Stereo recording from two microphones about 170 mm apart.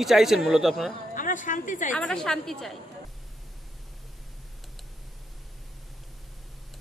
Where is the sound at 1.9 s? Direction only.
5° left (ahead or behind).